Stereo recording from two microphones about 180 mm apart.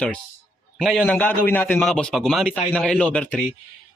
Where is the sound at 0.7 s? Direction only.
Centre (ahead or behind).